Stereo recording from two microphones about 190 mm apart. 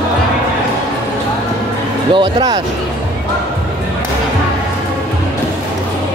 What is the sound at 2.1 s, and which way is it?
Speech, 20° right (ahead or behind).